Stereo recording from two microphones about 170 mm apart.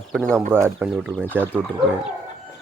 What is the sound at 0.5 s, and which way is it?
Speech, 15° right (ahead or behind).